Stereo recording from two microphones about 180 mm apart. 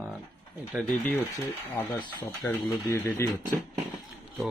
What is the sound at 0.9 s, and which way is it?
Speech, 10° left (ahead or behind).